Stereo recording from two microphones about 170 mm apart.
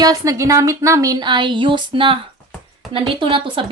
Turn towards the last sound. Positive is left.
turn(degrees=-30)  # may be behind; listen again after turning